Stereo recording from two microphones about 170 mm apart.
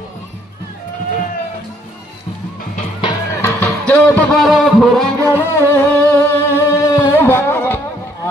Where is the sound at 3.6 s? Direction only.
10° left (ahead or behind).